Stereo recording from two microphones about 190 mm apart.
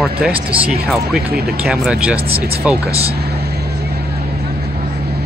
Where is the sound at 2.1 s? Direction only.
30° right (ahead or behind).